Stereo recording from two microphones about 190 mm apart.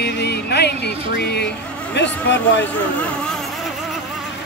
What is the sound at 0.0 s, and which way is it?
Music, 60° left (ahead or behind).